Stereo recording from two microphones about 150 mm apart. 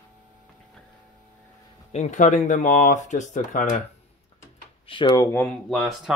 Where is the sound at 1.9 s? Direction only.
50° left (ahead or behind).